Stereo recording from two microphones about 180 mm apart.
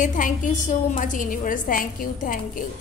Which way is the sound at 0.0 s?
45° left (ahead or behind).